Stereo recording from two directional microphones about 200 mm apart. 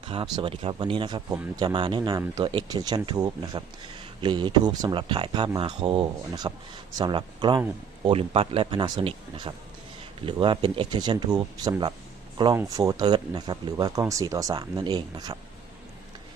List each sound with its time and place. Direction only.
0.0 s speech: 25° right (ahead or behind)